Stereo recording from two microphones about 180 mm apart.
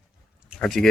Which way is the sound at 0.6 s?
Centre (ahead or behind).